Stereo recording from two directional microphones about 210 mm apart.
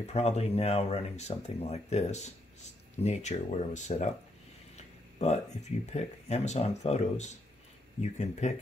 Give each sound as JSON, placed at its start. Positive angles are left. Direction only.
{"t": 0.0, "sound": "speech", "side_deg": 30}
{"t": 4.7, "sound": "a sound", "side_deg": 30}
{"t": 5.9, "sound": "speech", "side_deg": 30}